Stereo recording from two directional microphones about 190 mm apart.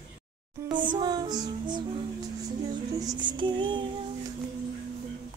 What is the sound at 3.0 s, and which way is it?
Music, 20° right (ahead or behind).